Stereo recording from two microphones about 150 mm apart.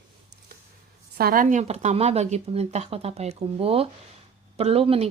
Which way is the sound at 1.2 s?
70° right (ahead or behind).